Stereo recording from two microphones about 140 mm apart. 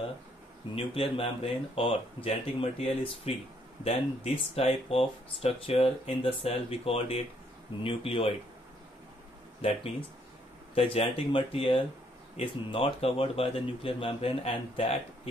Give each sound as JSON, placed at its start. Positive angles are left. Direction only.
{"t": 0.7, "sound": "speech", "side_deg": 40}
{"t": 9.6, "sound": "speech", "side_deg": 45}